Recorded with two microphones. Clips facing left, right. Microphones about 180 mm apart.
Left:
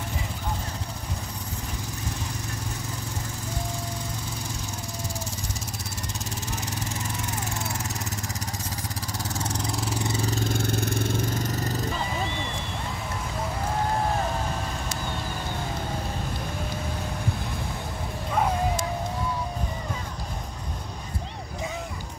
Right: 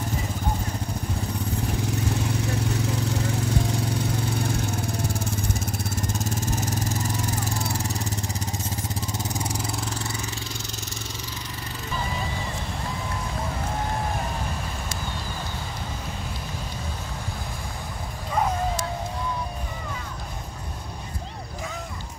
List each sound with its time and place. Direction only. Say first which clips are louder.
2.4 s lawn mower: right 9 dB; 75° right (ahead or behind)
6.4 s vehicle: right 5 dB; 45° right (ahead or behind)
9.4 s vehicle: even; 10° right (ahead or behind)
10.2 s vehicle: left 8 dB; 45° left (ahead or behind)